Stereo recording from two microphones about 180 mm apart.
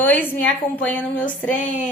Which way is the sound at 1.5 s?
45° left (ahead or behind).